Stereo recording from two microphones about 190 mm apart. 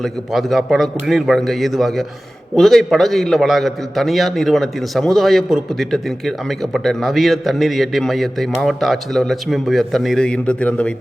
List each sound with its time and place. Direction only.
0.0 s a man's voice: centre (ahead or behind)